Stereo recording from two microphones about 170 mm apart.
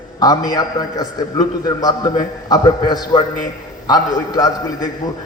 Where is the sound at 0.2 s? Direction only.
20° left (ahead or behind).